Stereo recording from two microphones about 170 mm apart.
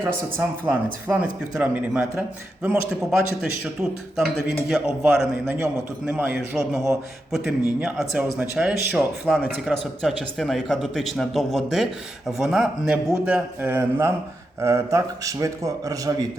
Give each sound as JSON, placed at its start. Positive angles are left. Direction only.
{"t": 0.3, "sound": "speech", "side_deg": -10}
{"t": 4.7, "sound": "speech", "side_deg": 0}
{"t": 7.3, "sound": "a man's voice", "side_deg": 0}